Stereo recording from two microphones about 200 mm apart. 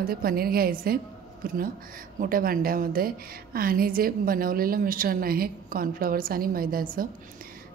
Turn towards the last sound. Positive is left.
turn(degrees=-45)  # may be behind; listen again after turning